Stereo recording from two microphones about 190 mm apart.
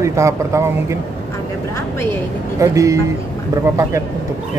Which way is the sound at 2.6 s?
15° right (ahead or behind).